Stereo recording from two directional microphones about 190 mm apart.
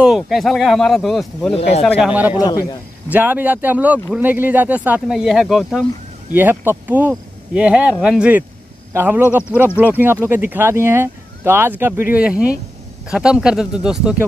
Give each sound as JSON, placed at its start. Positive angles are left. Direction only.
{"t": 0.0, "sound": "speech", "side_deg": 0}
{"t": 1.5, "sound": "speech", "side_deg": 35}
{"t": 1.8, "sound": "speech", "side_deg": 0}
{"t": 2.3, "sound": "a man's voice", "side_deg": 20}
{"t": 3.1, "sound": "speech", "side_deg": -10}